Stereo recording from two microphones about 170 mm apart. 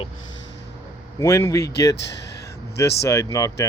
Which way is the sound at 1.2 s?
20° left (ahead or behind).